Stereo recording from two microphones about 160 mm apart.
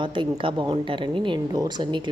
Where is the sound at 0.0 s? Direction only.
30° right (ahead or behind).